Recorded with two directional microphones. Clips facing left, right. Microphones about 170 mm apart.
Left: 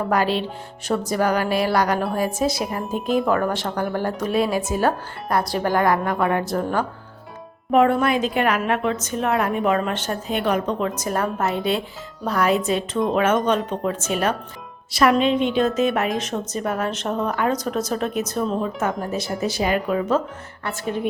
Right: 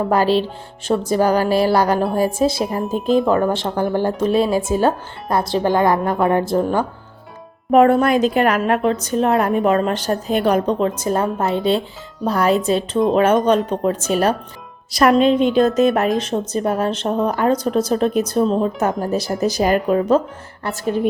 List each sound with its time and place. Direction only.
0.1 s a woman's voice: 35° right (ahead or behind)
2.8 s speech: centre (ahead or behind)
3.2 s speech: 25° right (ahead or behind)
7.7 s a woman's voice: 45° right (ahead or behind)